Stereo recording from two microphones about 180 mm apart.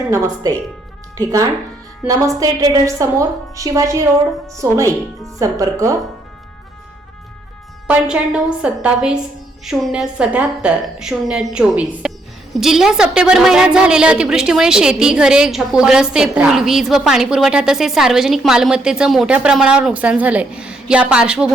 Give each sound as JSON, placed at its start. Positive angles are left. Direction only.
{"t": 0.1, "sound": "a woman's voice", "side_deg": -20}
{"t": 7.9, "sound": "a woman's voice", "side_deg": -5}